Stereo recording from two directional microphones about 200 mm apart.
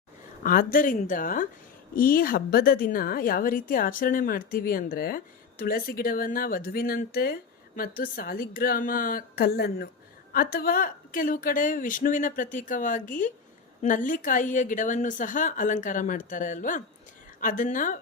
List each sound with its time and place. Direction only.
0.4 s a woman's voice: 45° left (ahead or behind)